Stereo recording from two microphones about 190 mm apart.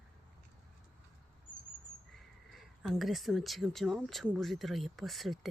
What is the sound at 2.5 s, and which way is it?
Speech, centre (ahead or behind).